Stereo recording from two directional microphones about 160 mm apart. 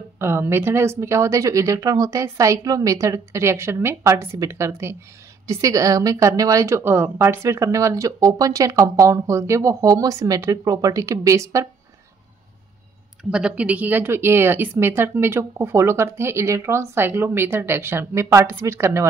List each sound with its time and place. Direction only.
0.2 s a woman's voice: 15° right (ahead or behind)
13.2 s speech: 5° right (ahead or behind)